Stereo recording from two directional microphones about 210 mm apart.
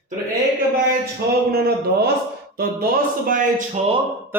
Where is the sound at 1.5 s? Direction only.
50° right (ahead or behind).